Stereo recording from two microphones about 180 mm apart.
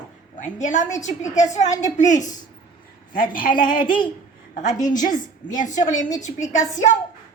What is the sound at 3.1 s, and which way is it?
Speech, 50° left (ahead or behind).